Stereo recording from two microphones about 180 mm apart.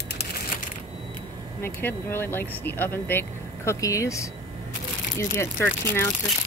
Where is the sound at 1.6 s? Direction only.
10° left (ahead or behind).